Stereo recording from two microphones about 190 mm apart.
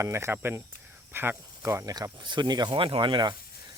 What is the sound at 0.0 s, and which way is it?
Speech, 15° right (ahead or behind).